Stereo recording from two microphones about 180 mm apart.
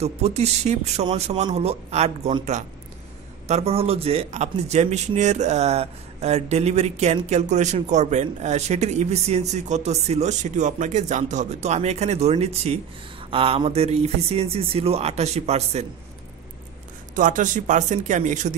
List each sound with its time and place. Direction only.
0.0 s speech: 35° right (ahead or behind)
17.1 s speech: 45° right (ahead or behind)